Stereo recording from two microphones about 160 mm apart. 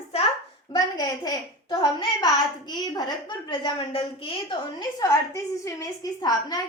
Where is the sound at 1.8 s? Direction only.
25° left (ahead or behind).